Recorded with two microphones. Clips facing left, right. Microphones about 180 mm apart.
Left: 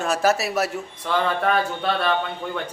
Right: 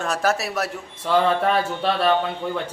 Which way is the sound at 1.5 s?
30° right (ahead or behind).